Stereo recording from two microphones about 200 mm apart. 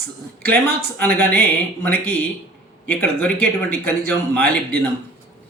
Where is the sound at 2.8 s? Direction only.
5° left (ahead or behind).